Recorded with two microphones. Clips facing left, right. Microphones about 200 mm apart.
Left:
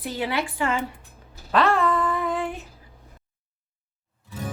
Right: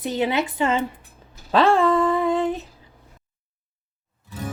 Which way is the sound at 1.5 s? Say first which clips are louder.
Right 4 dB; 30° right (ahead or behind).